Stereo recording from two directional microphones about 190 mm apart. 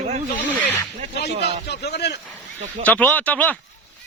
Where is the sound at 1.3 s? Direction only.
60° left (ahead or behind).